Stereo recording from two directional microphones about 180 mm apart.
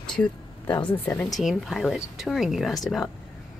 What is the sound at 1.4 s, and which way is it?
Speech, centre (ahead or behind).